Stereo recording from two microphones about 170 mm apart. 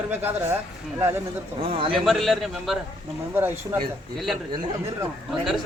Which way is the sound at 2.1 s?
Centre (ahead or behind).